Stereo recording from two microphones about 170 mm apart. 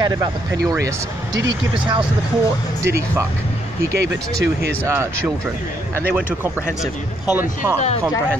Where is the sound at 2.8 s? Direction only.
15° right (ahead or behind).